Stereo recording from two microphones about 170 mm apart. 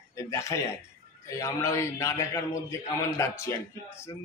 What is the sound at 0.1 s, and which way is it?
A man's voice, 20° left (ahead or behind).